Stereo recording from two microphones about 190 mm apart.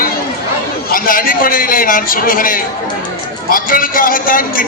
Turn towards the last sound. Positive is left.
turn(degrees=45)  # may be behind; listen again after turning